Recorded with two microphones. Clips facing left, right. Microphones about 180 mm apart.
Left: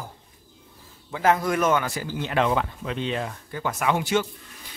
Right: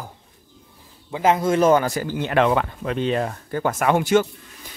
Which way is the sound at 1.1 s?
20° right (ahead or behind).